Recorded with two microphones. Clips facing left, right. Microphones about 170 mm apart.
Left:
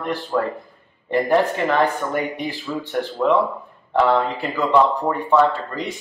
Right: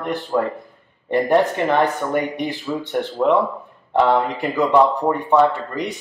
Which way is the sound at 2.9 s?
20° right (ahead or behind).